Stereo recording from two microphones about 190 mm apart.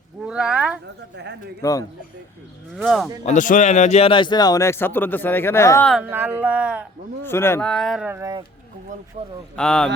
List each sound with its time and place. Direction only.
0.3 s a sound: 5° right (ahead or behind)
1.1 s a man's voice: 65° right (ahead or behind)
1.6 s a man's voice: 15° left (ahead or behind)
2.7 s speech: centre (ahead or behind)
3.2 s a man's voice: 40° left (ahead or behind); by 5.9 s 15° left (ahead or behind)
5.9 s speech: 10° right (ahead or behind)
7.3 s speech: 15° left (ahead or behind); by 8.3 s 10° right (ahead or behind)
9.2 s a man's voice: 35° right (ahead or behind)
9.6 s speech: 5° left (ahead or behind)